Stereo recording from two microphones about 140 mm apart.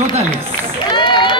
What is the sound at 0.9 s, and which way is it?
Run, 35° left (ahead or behind).